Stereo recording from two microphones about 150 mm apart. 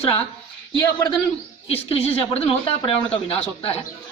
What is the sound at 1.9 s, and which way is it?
Speech, 40° left (ahead or behind).